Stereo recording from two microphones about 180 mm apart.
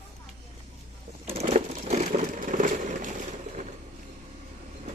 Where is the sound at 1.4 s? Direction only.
40° right (ahead or behind).